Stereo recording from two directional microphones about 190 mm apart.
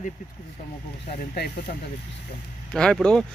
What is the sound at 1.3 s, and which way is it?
Speech, 55° left (ahead or behind).